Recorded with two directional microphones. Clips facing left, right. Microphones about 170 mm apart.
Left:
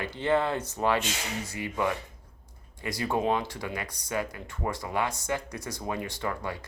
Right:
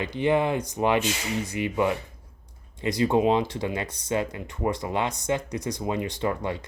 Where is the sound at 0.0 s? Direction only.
15° right (ahead or behind).